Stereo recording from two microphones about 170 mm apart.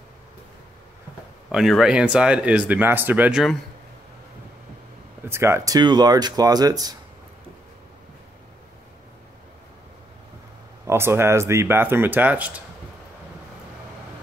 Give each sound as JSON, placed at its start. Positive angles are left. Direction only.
{"t": 1.5, "sound": "speech", "side_deg": 0}
{"t": 5.2, "sound": "speech", "side_deg": -15}
{"t": 5.8, "sound": "speech", "side_deg": -25}
{"t": 10.9, "sound": "speech", "side_deg": -15}